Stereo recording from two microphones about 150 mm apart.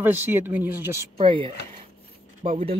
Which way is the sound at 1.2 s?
35° right (ahead or behind).